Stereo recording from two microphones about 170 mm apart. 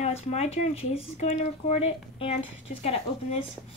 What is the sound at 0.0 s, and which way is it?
Speech, 40° left (ahead or behind).